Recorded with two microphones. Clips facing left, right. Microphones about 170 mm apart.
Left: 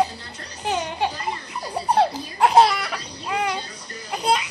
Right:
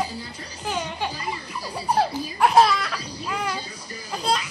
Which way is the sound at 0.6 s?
30° left (ahead or behind).